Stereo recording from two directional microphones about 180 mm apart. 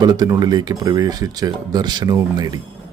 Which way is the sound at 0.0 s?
20° right (ahead or behind).